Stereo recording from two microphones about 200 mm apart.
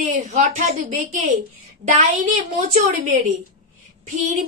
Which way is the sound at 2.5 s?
35° right (ahead or behind).